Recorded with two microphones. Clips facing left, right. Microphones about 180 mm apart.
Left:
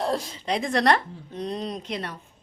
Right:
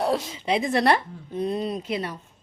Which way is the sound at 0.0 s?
5° right (ahead or behind).